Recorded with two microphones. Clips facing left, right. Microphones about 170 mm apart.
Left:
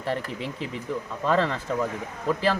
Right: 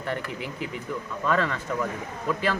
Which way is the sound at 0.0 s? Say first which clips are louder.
Left 2 dB; 30° left (ahead or behind).